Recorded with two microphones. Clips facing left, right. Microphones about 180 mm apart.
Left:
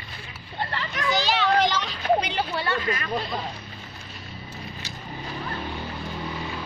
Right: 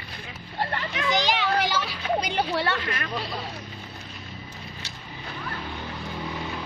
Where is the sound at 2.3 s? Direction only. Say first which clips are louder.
Right 2 dB; 70° right (ahead or behind).